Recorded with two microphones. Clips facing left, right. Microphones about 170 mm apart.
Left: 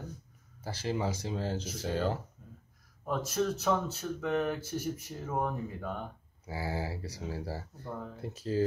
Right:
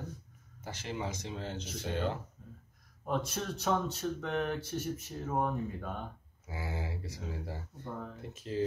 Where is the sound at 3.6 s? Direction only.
Centre (ahead or behind).